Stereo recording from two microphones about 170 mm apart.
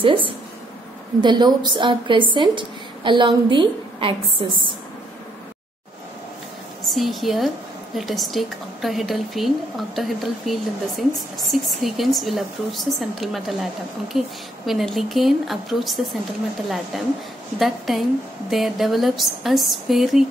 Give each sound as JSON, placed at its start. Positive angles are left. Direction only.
{"t": 0.0, "sound": "a woman's voice", "side_deg": -30}
{"t": 6.9, "sound": "a woman's voice", "side_deg": 0}